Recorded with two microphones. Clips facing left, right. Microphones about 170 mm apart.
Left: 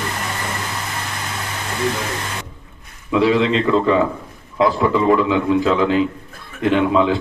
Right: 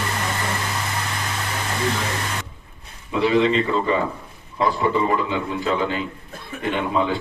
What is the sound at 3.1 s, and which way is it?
A man's voice, 85° left.